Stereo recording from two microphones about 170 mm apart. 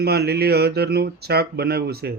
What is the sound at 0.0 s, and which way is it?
Speech, 70° right (ahead or behind).